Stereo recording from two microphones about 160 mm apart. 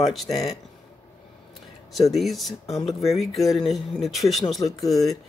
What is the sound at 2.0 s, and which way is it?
Speech, centre (ahead or behind).